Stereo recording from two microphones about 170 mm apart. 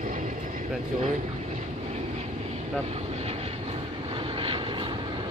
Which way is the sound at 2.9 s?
40° right (ahead or behind).